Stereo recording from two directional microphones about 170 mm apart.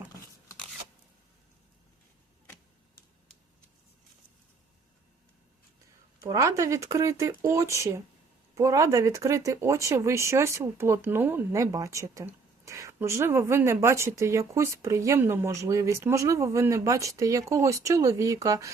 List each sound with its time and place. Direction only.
6.2 s speech: 20° right (ahead or behind)